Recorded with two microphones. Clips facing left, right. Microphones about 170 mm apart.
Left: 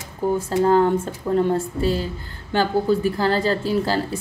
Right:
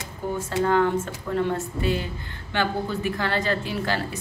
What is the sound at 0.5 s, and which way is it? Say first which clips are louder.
A woman's voice: left 4 dB; 35° left (ahead or behind).